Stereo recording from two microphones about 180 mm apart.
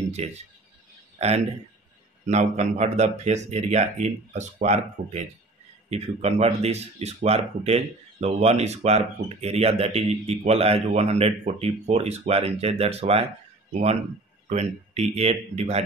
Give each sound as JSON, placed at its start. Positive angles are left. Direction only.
{"t": 0.1, "sound": "speech", "side_deg": -40}
{"t": 1.1, "sound": "a sound", "side_deg": -35}
{"t": 2.2, "sound": "speech", "side_deg": -40}